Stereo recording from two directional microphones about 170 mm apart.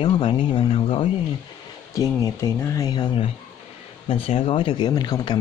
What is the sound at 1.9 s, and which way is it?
Speech, 20° left (ahead or behind).